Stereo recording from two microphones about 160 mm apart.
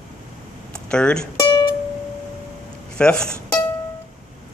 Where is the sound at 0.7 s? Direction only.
5° left (ahead or behind).